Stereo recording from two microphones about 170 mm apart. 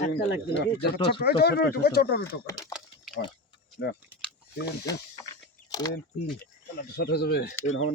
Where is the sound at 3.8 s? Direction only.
80° left.